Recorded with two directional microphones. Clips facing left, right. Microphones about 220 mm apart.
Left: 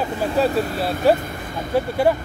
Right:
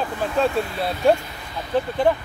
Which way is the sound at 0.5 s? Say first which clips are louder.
Left 3 dB; 45° left (ahead or behind).